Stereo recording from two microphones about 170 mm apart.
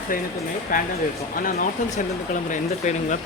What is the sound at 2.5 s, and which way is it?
Speech, 45° left (ahead or behind).